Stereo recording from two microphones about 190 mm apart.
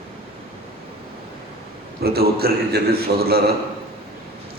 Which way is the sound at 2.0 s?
55° right (ahead or behind).